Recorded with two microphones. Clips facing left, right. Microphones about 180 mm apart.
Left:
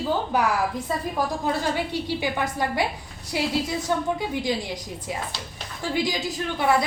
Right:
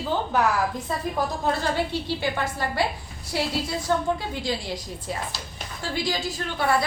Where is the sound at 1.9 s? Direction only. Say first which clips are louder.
Left 1 dB; 15° left (ahead or behind).